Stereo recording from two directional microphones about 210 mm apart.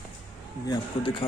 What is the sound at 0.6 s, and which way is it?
Speech, 20° left (ahead or behind).